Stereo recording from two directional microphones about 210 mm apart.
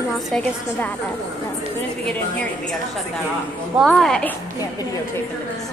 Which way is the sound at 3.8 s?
Centre (ahead or behind).